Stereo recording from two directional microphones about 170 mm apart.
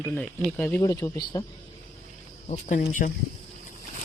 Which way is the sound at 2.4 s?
50° left (ahead or behind).